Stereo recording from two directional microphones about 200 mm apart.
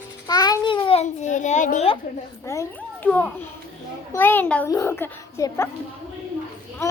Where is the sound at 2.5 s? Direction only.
15° left (ahead or behind).